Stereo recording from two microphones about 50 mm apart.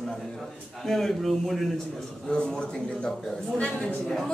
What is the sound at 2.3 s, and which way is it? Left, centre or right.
Speech, centre.